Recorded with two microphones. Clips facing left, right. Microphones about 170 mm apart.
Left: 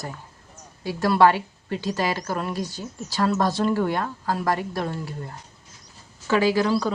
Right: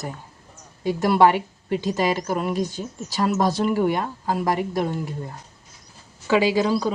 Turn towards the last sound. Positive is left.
turn(degrees=-20)  # may be behind; listen again after turning